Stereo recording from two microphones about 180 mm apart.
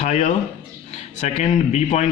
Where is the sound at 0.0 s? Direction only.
40° left (ahead or behind).